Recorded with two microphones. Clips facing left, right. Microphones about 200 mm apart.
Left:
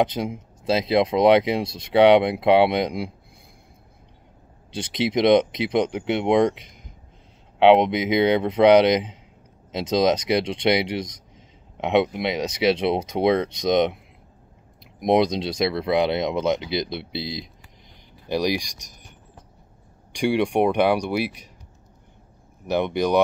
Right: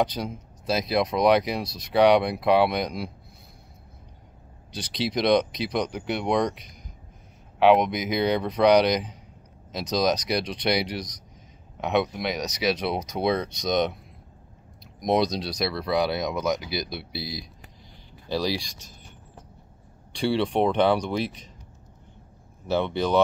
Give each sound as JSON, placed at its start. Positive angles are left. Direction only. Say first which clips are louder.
{"t": 0.0, "sound": "speech", "louder": "left 3 dB", "side_deg": 25}
{"t": 4.7, "sound": "speech", "louder": "left 5 dB", "side_deg": 20}
{"t": 7.5, "sound": "speech", "louder": "left 4 dB", "side_deg": 25}
{"t": 15.0, "sound": "speech", "louder": "left 4 dB", "side_deg": 25}
{"t": 20.1, "sound": "speech", "louder": "left 3 dB", "side_deg": 15}
{"t": 22.7, "sound": "speech", "louder": "left 3 dB", "side_deg": 15}